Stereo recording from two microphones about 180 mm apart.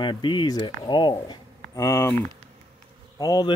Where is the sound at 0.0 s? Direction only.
25° left (ahead or behind).